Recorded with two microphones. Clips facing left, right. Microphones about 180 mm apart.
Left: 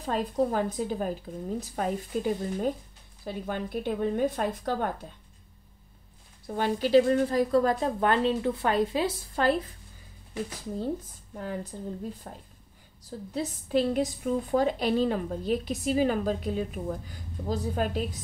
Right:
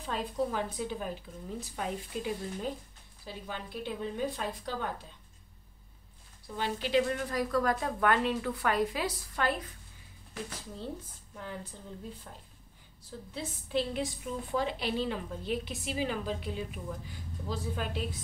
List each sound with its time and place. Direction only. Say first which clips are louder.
0.0 s a woman's voice: left 6 dB; 45° left (ahead or behind)
6.4 s speech: left 7 dB; 50° left (ahead or behind)
6.9 s a woman's voice: left 8 dB; 35° left (ahead or behind)
11.3 s a woman's voice: left 7 dB; 45° left (ahead or behind)